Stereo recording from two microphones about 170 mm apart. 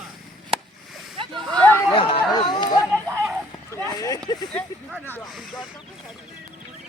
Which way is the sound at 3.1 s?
15° right (ahead or behind).